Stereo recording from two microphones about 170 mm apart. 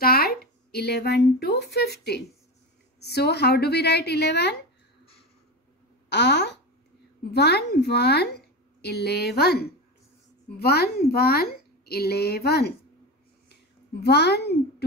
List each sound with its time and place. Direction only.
0.0 s speech: 65° left (ahead or behind)
6.0 s speech: 90° left
7.3 s speech: 70° left (ahead or behind)
14.0 s speech: 75° left (ahead or behind)